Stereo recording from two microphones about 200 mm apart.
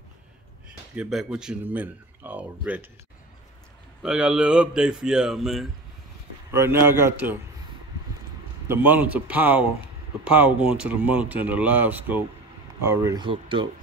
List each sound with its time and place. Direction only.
0.9 s speech: 5° right (ahead or behind)
4.0 s speech: 5° right (ahead or behind)
6.5 s speech: 10° right (ahead or behind)
8.6 s speech: 10° right (ahead or behind)